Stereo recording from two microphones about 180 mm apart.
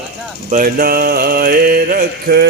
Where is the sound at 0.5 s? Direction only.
50° right (ahead or behind).